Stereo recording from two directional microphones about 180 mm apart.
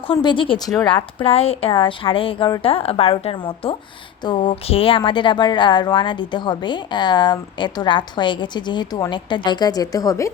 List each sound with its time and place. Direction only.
0.1 s a woman's voice: 25° left (ahead or behind)
1.2 s a woman's voice: 35° left (ahead or behind)